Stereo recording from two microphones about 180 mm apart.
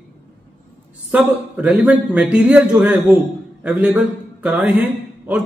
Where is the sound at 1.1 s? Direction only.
5° right (ahead or behind).